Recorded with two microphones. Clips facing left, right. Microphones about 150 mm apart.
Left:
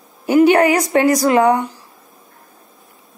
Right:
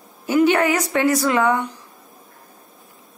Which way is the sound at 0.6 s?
10° left (ahead or behind).